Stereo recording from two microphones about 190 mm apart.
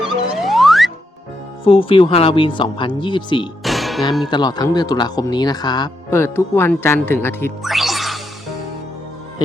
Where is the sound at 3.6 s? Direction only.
Centre (ahead or behind).